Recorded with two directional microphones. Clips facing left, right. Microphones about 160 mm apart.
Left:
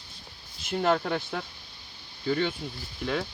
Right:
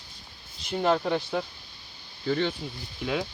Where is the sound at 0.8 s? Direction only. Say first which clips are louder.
Right 1 dB; 5° right (ahead or behind).